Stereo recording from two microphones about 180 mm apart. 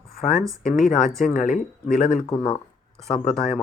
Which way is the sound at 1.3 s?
45° left (ahead or behind).